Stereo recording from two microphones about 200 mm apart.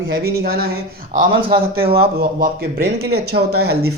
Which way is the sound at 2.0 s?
50° right (ahead or behind).